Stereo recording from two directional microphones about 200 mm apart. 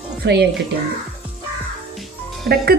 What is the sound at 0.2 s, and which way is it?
Speech, 55° right (ahead or behind).